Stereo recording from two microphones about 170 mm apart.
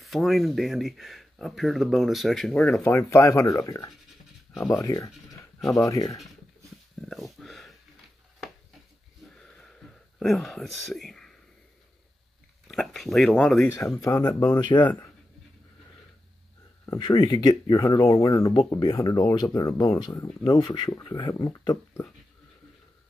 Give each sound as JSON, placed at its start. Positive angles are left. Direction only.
{"t": 0.0, "sound": "speech", "side_deg": 0}
{"t": 2.8, "sound": "speech", "side_deg": 15}
{"t": 7.0, "sound": "a sound", "side_deg": 0}
{"t": 9.4, "sound": "a sound", "side_deg": 5}
{"t": 12.6, "sound": "speech", "side_deg": 0}
{"t": 13.9, "sound": "speech", "side_deg": 20}
{"t": 17.0, "sound": "speech", "side_deg": 25}